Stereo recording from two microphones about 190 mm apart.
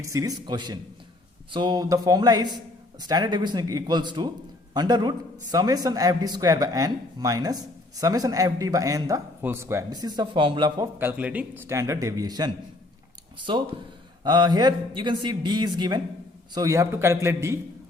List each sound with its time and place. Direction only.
0.0 s a man's voice: 15° right (ahead or behind)
10.9 s speech: 10° right (ahead or behind)
13.5 s a man's voice: 25° right (ahead or behind)